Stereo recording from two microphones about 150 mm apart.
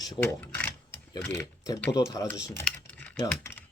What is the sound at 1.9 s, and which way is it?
Speech, 25° left (ahead or behind).